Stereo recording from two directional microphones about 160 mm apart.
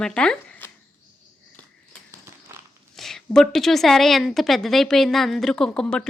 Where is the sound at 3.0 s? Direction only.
Centre (ahead or behind).